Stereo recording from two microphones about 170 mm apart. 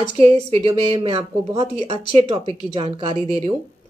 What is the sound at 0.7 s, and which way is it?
A woman's voice, 35° right (ahead or behind).